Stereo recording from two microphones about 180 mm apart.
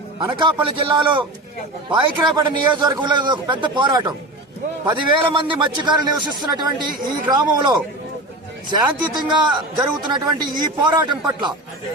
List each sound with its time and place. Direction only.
0.2 s a man's voice: 25° right (ahead or behind)